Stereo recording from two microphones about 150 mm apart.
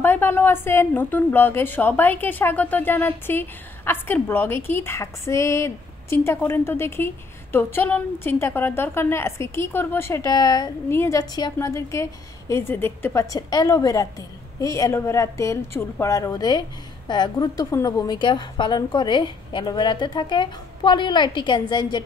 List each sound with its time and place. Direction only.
0.0 s a woman's voice: 15° left (ahead or behind); by 22.0 s 30° left (ahead or behind)